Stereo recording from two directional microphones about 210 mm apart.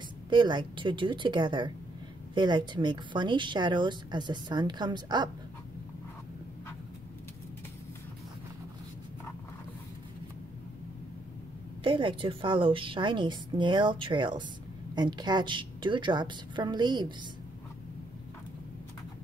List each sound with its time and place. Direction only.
0.3 s a woman's voice: 20° right (ahead or behind)
11.8 s a woman's voice: 25° right (ahead or behind)